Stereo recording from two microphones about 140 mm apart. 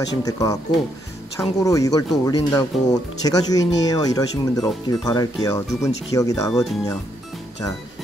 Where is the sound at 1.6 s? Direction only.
25° left (ahead or behind).